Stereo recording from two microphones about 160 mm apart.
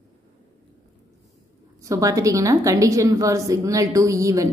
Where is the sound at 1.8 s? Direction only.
20° right (ahead or behind).